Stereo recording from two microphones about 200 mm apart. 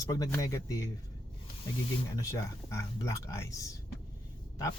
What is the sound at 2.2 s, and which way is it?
Speech, 15° left (ahead or behind).